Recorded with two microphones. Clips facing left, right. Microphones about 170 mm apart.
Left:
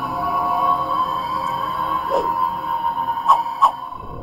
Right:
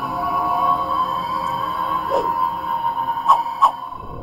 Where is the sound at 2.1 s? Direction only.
Centre (ahead or behind).